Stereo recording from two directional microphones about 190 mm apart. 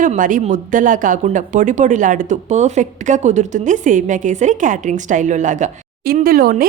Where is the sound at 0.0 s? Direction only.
45° right (ahead or behind).